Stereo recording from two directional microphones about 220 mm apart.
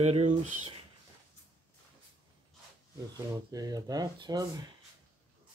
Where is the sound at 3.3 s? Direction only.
15° right (ahead or behind).